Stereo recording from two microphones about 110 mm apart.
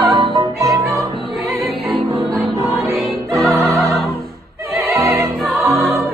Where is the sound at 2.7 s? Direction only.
25° right (ahead or behind).